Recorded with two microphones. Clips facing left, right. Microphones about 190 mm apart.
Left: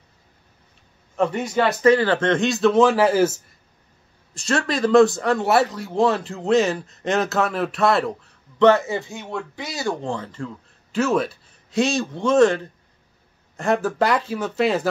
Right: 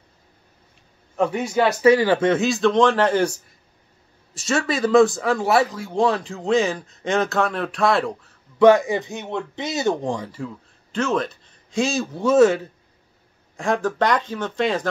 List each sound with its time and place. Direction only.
1.1 s speech: 5° right (ahead or behind)
8.5 s speech: 10° right (ahead or behind)
10.9 s speech: 5° left (ahead or behind)
13.6 s speech: 5° left (ahead or behind)